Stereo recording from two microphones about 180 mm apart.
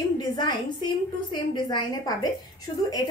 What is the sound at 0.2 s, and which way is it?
A woman's voice, 25° left (ahead or behind).